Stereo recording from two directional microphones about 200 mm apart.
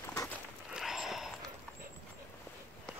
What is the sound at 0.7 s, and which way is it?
Snort, centre (ahead or behind).